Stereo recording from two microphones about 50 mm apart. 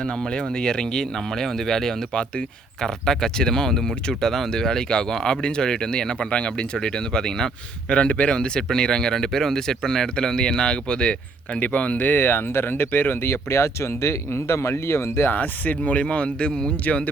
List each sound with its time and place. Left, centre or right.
0.0 s speech: centre
8.3 s speech: centre; by 15.3 s left
15.3 s speech: left; by 16.7 s centre